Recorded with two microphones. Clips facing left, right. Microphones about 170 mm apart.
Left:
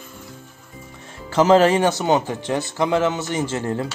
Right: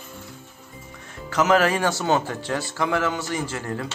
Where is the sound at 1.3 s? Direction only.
30° left (ahead or behind).